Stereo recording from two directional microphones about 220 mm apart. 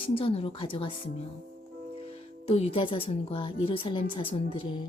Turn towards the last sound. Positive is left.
turn(degrees=20)  # may be behind; listen again after turning